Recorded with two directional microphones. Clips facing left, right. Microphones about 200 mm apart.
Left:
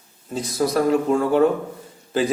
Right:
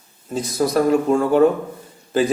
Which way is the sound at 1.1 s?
45° right (ahead or behind).